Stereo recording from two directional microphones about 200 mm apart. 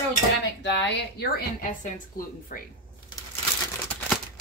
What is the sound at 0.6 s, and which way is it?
Speech, 60° left (ahead or behind).